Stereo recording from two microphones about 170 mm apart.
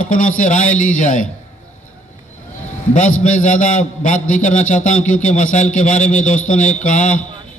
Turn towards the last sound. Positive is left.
turn(degrees=45)  # may be behind; listen again after turning